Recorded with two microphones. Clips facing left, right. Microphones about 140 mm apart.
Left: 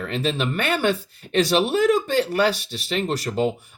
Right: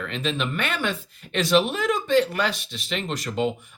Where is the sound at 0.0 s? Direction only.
40° left (ahead or behind).